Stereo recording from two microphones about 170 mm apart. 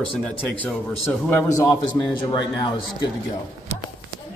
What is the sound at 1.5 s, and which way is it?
A man's voice, 20° left (ahead or behind).